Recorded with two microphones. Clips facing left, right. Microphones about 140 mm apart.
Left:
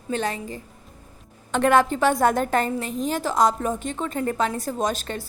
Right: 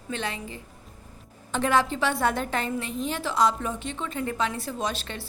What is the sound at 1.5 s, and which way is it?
A woman's voice, 60° left (ahead or behind).